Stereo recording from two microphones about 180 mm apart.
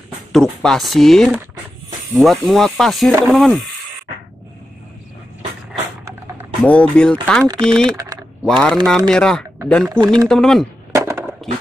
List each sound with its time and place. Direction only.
0.3 s speech: 5° left (ahead or behind)
6.6 s speech: 5° left (ahead or behind)
8.0 s typing: 20° right (ahead or behind)
8.5 s speech: 5° left (ahead or behind)
10.9 s a sound: 15° right (ahead or behind)